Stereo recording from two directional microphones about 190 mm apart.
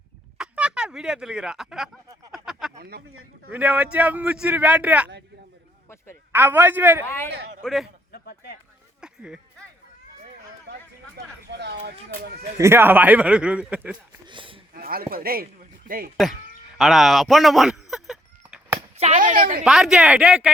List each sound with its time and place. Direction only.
0.3 s speech: 5° right (ahead or behind)
2.3 s a sound: centre (ahead or behind)
3.5 s a man's voice: 5° right (ahead or behind)
6.3 s a man's voice: 10° right (ahead or behind)
7.6 s speech: centre (ahead or behind)
8.1 s speech: 55° left (ahead or behind)
9.0 s a sound: 5° right (ahead or behind)
12.5 s a man's voice: 15° right (ahead or behind)
14.3 s speech: 25° right (ahead or behind)
14.7 s a man's voice: 50° right (ahead or behind)
16.2 s speech: centre (ahead or behind)
16.7 s a sound: centre (ahead or behind)
18.9 s speech: 40° right (ahead or behind)
19.6 s speech: centre (ahead or behind)